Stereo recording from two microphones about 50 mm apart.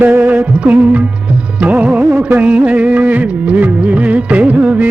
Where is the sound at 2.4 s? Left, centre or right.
Right.